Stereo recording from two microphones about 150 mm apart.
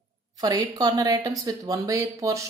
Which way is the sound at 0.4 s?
25° right (ahead or behind).